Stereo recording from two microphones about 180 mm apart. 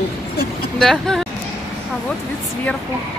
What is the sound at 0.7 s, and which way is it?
Speech, centre (ahead or behind).